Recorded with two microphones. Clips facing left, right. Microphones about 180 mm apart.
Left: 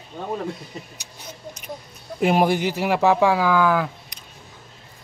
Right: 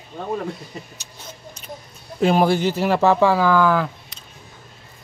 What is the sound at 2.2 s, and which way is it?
Speech, 15° left (ahead or behind).